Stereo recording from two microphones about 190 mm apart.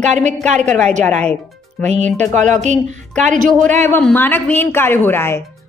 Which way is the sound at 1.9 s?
35° right (ahead or behind).